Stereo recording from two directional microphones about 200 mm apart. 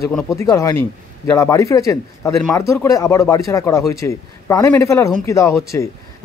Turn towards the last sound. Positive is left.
turn(degrees=15)  # may be behind; listen again after turning